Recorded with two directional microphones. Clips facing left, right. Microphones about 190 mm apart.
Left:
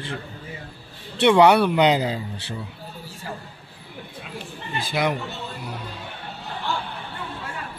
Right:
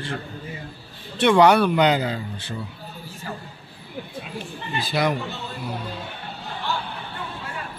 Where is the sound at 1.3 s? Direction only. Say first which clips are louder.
Even; 25° left (ahead or behind).